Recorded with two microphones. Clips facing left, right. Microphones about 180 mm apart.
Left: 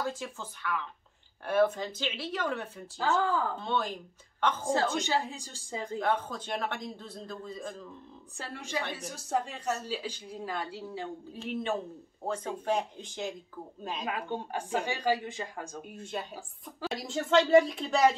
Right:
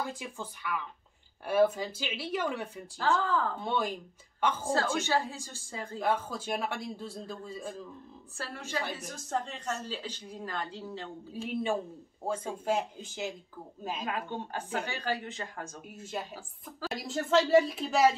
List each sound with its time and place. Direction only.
0.1 s a man's voice: 15° right (ahead or behind)
3.0 s a woman's voice: 10° left (ahead or behind)
3.5 s a man's voice: 10° right (ahead or behind)
4.9 s a woman's voice: 15° left (ahead or behind)
5.9 s a man's voice: 10° right (ahead or behind)
8.4 s a woman's voice: 15° left (ahead or behind)
11.3 s a man's voice: 10° right (ahead or behind)
14.1 s a woman's voice: 15° left (ahead or behind)
15.9 s speech: 5° right (ahead or behind)